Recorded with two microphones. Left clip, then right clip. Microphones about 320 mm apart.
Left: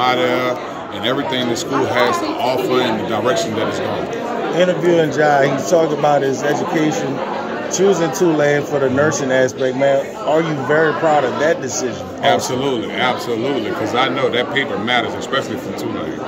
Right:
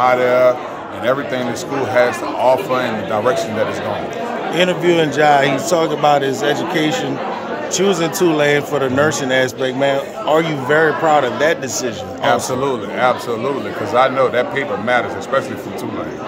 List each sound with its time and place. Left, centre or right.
0.0 s speech: centre
4.6 s speech: centre